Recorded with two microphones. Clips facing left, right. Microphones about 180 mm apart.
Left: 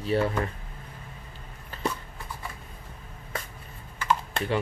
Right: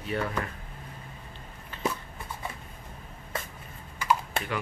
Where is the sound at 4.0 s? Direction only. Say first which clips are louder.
Even; 10° right (ahead or behind).